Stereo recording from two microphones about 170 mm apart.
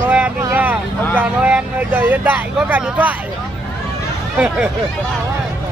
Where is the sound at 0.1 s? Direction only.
10° right (ahead or behind).